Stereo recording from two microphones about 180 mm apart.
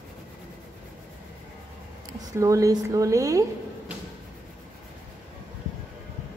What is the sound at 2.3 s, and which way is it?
A woman's voice, 20° right (ahead or behind).